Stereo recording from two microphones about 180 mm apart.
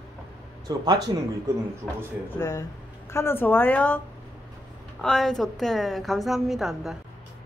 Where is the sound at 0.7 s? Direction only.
20° right (ahead or behind).